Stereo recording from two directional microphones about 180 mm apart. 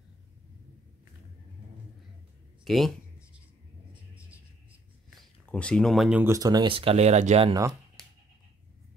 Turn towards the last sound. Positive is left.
turn(degrees=-40)  # may be behind; listen again after turning